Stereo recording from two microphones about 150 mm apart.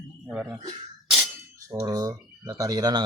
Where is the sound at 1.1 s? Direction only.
Centre (ahead or behind).